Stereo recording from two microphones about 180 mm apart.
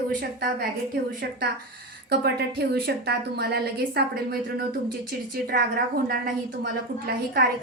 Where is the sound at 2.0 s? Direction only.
65° right (ahead or behind).